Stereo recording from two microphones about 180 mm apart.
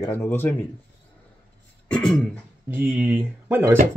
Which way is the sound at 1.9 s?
5° left (ahead or behind).